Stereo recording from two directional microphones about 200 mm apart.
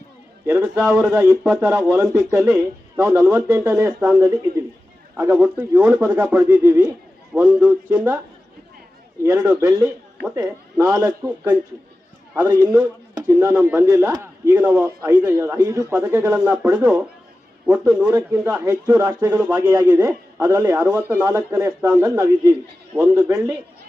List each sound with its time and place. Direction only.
0.4 s a man's voice: 5° right (ahead or behind)
9.2 s a man's voice: 10° right (ahead or behind)
13.1 s speech: 15° right (ahead or behind)
14.8 s a man's voice: 15° right (ahead or behind)